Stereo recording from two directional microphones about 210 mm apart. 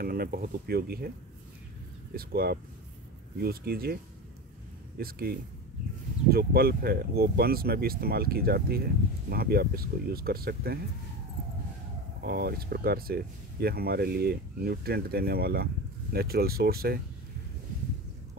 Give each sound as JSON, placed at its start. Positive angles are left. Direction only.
{"t": 0.0, "sound": "speech", "side_deg": -45}
{"t": 2.1, "sound": "speech", "side_deg": -45}
{"t": 12.2, "sound": "speech", "side_deg": -50}